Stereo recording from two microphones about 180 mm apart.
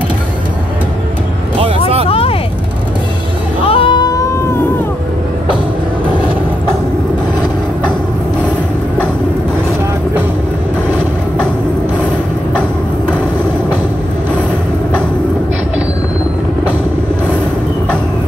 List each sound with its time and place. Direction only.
2.0 s vehicle: 30° left (ahead or behind)
3.6 s music: 30° left (ahead or behind)